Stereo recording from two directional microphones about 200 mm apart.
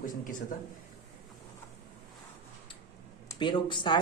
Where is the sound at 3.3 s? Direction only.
25° left (ahead or behind).